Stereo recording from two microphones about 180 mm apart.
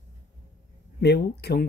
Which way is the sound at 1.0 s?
70° left (ahead or behind).